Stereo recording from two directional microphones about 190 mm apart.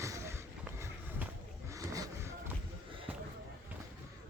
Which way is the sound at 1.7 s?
15° right (ahead or behind).